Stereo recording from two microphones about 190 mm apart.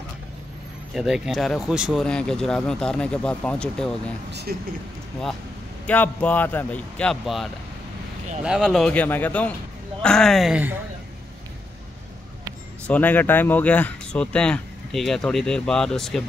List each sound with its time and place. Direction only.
0.9 s speech: centre (ahead or behind)
4.3 s speech: 60° right (ahead or behind)
5.9 s speech: 10° left (ahead or behind)
8.5 s speech: 5° right (ahead or behind)
12.8 s speech: 10° left (ahead or behind)